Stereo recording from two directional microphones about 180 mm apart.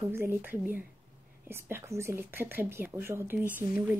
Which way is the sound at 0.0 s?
15° right (ahead or behind).